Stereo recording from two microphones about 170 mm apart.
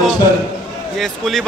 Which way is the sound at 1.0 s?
Centre (ahead or behind).